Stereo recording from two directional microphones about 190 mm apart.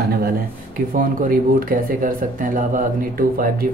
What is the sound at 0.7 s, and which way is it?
Speech, 45° right (ahead or behind).